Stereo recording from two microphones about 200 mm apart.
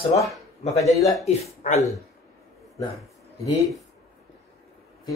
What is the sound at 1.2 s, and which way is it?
Speech, 35° left (ahead or behind).